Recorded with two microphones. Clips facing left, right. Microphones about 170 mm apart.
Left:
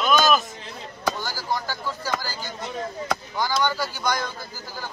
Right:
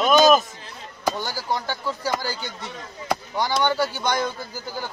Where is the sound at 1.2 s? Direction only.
20° right (ahead or behind).